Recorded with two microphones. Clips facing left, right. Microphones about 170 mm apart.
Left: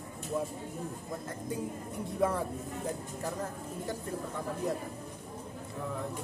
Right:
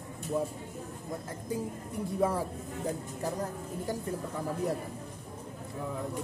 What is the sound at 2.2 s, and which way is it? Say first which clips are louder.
Speech: right 1 dB; 10° right (ahead or behind).